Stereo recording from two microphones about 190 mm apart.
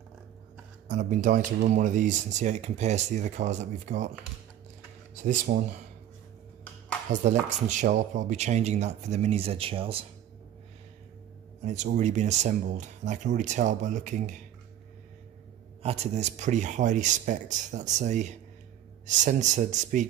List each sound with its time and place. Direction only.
0.8 s speech: 40° right (ahead or behind)
5.2 s speech: 40° right (ahead or behind)
7.2 s speech: 40° right (ahead or behind)
11.6 s speech: 40° right (ahead or behind)
15.8 s speech: 35° right (ahead or behind)